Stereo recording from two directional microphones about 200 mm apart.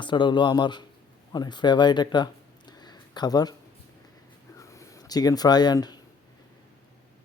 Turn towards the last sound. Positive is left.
turn(degrees=20)  # may be behind; listen again after turning